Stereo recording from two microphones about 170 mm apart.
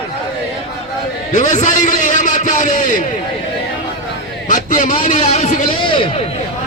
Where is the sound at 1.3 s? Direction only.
45° left (ahead or behind).